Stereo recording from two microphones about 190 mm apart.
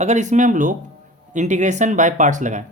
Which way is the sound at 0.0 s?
40° right (ahead or behind).